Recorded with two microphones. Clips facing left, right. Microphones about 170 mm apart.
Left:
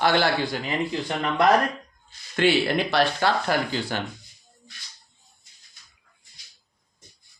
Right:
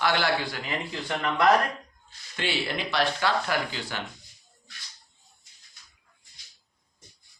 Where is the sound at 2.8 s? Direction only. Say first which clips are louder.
Left 4 dB; 35° left (ahead or behind).